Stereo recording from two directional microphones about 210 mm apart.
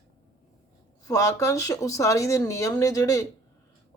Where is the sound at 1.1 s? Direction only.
15° left (ahead or behind).